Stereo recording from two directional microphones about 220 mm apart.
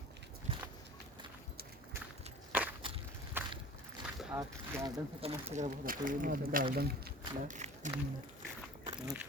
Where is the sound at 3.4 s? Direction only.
10° right (ahead or behind).